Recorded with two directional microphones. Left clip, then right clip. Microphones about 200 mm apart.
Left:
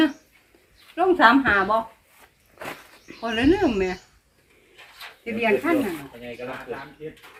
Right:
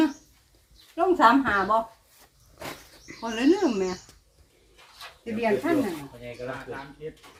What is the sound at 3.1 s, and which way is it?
Speech, 15° right (ahead or behind).